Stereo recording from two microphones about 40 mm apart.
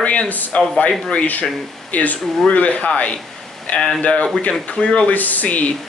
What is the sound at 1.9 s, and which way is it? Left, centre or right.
Speech, left.